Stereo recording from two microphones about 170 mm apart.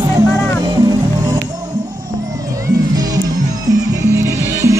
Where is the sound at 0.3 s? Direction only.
10° left (ahead or behind).